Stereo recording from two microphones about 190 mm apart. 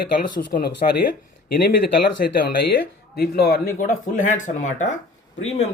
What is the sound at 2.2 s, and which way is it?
Speech, 50° left (ahead or behind).